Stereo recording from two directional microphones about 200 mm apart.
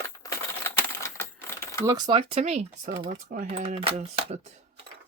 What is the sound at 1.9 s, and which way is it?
Speech, 20° right (ahead or behind).